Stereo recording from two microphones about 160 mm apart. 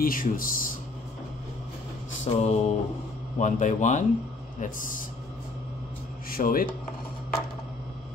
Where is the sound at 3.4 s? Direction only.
50° left (ahead or behind).